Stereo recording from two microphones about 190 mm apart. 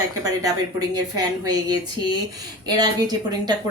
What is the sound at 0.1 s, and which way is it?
Speech, 20° right (ahead or behind).